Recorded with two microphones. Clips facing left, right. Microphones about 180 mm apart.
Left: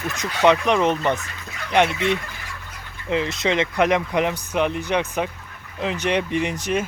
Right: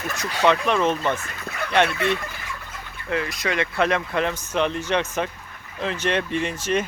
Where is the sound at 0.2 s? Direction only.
15° left (ahead or behind).